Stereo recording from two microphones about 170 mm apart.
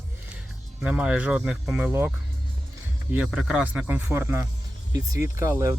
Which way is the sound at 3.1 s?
5° right (ahead or behind).